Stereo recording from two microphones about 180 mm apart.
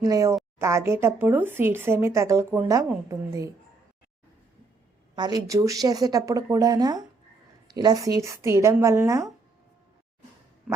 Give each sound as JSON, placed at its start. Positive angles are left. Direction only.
{"t": 0.0, "sound": "speech", "side_deg": -20}
{"t": 5.1, "sound": "speech", "side_deg": -20}
{"t": 10.7, "sound": "a sound", "side_deg": -5}